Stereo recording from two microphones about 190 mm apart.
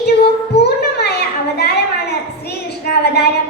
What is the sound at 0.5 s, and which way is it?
Music, 60° left (ahead or behind).